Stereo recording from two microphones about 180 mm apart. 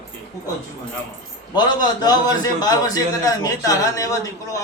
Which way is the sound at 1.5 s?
25° left (ahead or behind).